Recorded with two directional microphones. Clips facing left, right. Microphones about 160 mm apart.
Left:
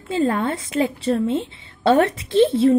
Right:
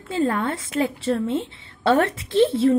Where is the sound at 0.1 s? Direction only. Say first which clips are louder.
Left 2 dB; 20° left (ahead or behind).